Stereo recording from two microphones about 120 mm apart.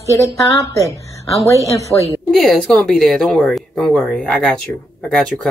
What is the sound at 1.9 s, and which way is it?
Speech, 15° left (ahead or behind).